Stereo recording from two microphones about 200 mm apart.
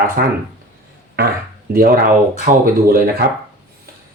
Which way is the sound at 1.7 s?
45° right (ahead or behind).